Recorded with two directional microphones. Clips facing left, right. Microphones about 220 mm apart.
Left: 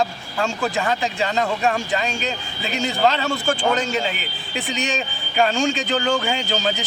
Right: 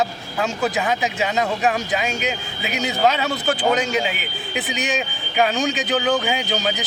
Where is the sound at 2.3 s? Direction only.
15° right (ahead or behind).